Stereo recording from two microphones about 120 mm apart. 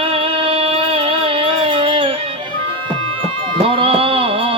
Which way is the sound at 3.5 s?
50° right (ahead or behind).